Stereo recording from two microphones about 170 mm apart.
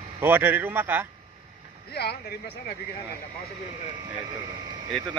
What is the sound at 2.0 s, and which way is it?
Speech, 70° left (ahead or behind).